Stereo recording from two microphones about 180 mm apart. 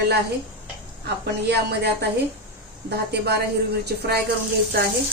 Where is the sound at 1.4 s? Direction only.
65° right (ahead or behind).